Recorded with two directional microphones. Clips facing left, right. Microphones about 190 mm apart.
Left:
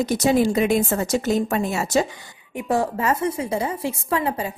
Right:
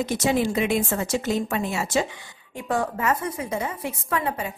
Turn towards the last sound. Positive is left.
turn(degrees=30)  # may be behind; listen again after turning